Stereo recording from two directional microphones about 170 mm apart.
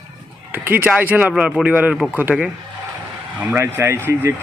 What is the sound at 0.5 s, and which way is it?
Speech, 10° right (ahead or behind).